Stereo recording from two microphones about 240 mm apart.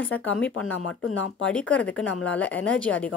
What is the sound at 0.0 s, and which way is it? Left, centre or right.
Speech, centre.